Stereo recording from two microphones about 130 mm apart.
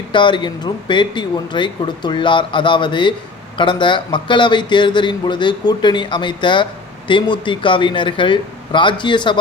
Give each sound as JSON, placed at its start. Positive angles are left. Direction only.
{"t": 0.1, "sound": "speech", "side_deg": 40}